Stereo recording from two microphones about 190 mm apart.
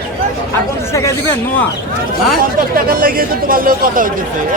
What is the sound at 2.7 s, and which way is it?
Speech, 50° right (ahead or behind).